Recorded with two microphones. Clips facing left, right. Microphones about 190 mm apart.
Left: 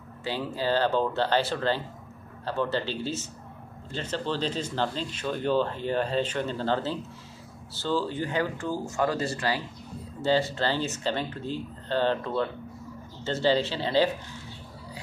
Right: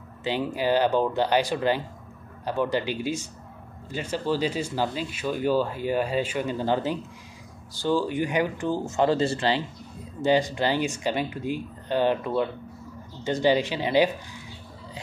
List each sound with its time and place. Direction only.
0.2 s speech: 15° right (ahead or behind)